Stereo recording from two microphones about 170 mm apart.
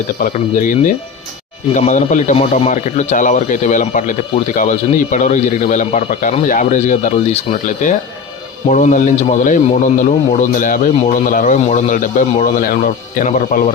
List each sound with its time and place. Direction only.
0.2 s speech: 50° left (ahead or behind)